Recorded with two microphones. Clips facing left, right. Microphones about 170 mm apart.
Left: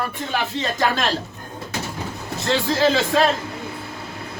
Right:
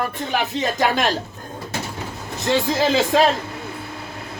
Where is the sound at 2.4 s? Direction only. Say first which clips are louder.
Even; 20° right (ahead or behind).